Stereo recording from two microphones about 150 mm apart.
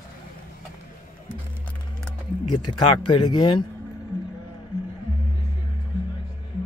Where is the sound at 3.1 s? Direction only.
30° left (ahead or behind).